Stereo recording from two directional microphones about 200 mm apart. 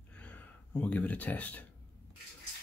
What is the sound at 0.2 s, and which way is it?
Speech, 5° left (ahead or behind).